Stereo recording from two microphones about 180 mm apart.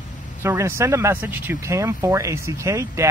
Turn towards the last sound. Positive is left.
turn(degrees=-15)  # may be behind; listen again after turning